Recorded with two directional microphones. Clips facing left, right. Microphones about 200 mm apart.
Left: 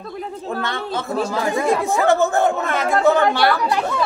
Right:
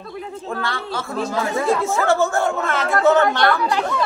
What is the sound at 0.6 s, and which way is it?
Speech, 20° left (ahead or behind).